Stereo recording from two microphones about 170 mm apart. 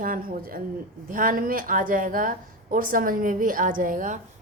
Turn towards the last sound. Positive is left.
turn(degrees=-50)  # may be behind; listen again after turning